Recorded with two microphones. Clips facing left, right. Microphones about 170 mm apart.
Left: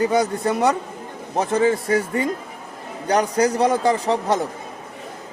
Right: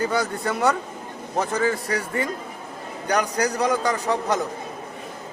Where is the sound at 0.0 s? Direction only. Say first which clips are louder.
Left 5 dB; 20° left (ahead or behind).